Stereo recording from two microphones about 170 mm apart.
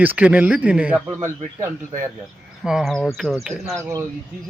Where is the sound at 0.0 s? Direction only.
10° right (ahead or behind).